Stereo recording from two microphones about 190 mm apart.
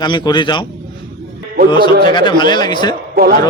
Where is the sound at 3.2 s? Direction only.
55° right (ahead or behind).